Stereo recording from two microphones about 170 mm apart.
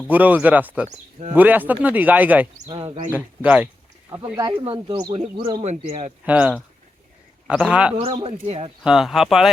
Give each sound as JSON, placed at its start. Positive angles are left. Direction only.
{"t": 0.1, "sound": "speech", "side_deg": -10}
{"t": 2.6, "sound": "speech", "side_deg": -35}
{"t": 3.1, "sound": "speech", "side_deg": -10}
{"t": 4.6, "sound": "speech", "side_deg": -35}
{"t": 5.6, "sound": "speech", "side_deg": -45}
{"t": 6.2, "sound": "speech", "side_deg": -5}
{"t": 8.0, "sound": "speech", "side_deg": -35}
{"t": 8.8, "sound": "speech", "side_deg": -5}